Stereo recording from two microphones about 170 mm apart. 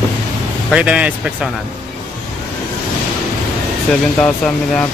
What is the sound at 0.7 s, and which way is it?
Speech, 5° right (ahead or behind).